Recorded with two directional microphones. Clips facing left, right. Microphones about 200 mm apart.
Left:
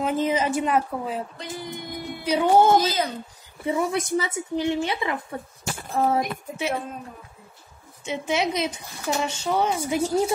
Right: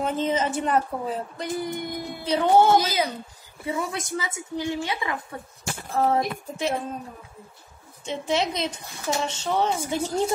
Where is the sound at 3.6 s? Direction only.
25° left (ahead or behind).